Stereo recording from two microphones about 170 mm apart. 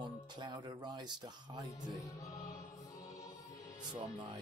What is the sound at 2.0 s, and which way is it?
Music, 20° left (ahead or behind).